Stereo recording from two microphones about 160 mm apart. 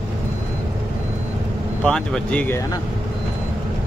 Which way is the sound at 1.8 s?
5° left (ahead or behind).